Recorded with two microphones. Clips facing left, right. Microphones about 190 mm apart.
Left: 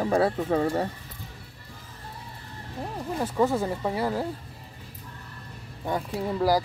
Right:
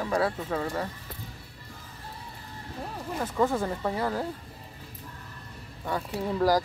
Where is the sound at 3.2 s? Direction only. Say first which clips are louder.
Left 2 dB; 10° left (ahead or behind).